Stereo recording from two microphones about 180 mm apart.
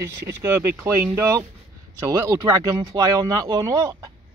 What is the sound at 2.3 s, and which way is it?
Speech, 20° right (ahead or behind).